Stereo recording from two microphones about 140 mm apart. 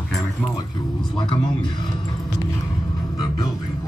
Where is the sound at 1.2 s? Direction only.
35° left (ahead or behind).